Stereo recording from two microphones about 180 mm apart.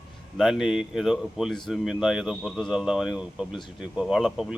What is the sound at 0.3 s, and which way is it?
Speech, centre (ahead or behind).